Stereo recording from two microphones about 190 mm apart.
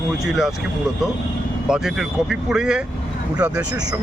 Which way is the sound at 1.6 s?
5° right (ahead or behind).